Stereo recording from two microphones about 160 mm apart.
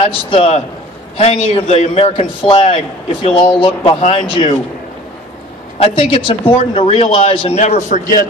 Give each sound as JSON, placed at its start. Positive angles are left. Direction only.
{"t": 0.0, "sound": "a man's voice", "side_deg": 35}
{"t": 5.8, "sound": "a man's voice", "side_deg": 35}